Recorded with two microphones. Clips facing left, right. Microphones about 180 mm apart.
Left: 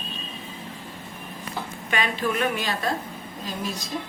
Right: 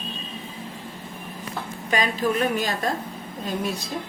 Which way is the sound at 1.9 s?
35° right (ahead or behind).